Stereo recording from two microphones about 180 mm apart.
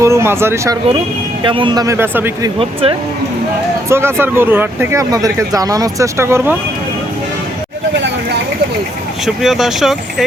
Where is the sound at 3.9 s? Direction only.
15° right (ahead or behind).